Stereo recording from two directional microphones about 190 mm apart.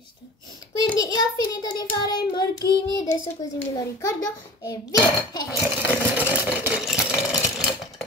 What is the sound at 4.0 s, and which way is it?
Dishes, 15° left (ahead or behind).